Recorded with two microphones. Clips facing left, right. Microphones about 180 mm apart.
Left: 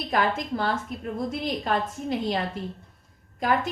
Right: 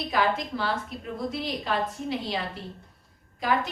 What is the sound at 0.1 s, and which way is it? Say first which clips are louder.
A woman's voice: left 1 dB; 50° left (ahead or behind).